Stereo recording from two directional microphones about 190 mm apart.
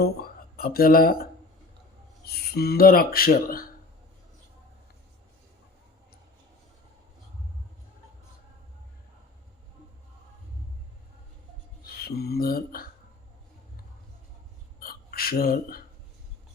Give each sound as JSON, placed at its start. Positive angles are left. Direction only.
{"t": 0.0, "sound": "speech", "side_deg": 50}
{"t": 11.8, "sound": "speech", "side_deg": 55}
{"t": 14.8, "sound": "a sound", "side_deg": 50}